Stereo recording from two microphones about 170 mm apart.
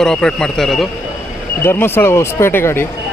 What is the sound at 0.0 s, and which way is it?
Speech, 5° left (ahead or behind).